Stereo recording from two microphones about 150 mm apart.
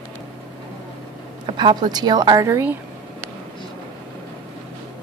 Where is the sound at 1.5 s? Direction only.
30° right (ahead or behind).